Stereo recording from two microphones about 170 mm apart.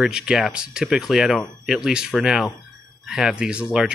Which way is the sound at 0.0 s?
5° right (ahead or behind).